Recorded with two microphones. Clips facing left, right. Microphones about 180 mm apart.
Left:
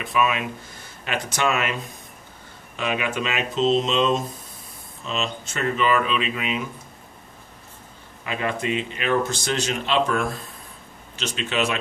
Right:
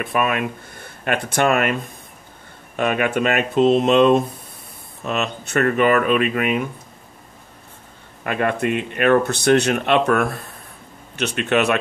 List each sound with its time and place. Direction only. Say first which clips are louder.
0.0 s speech: right 2 dB; 55° right (ahead or behind)
8.2 s speech: right 6 dB; 55° right (ahead or behind)